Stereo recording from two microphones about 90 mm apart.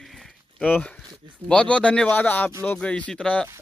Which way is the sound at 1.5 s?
10° left (ahead or behind).